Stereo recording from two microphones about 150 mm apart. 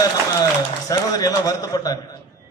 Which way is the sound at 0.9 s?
25° left (ahead or behind).